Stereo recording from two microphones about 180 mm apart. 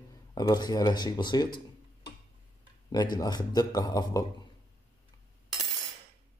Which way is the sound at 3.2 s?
20° left (ahead or behind).